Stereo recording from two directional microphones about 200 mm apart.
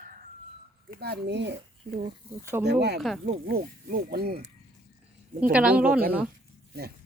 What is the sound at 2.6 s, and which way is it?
Speech, 55° right (ahead or behind).